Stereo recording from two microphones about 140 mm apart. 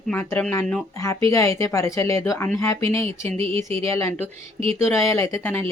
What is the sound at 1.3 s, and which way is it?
Speech, 20° left (ahead or behind).